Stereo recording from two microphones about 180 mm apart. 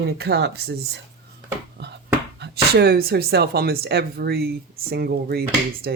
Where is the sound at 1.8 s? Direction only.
65° right (ahead or behind).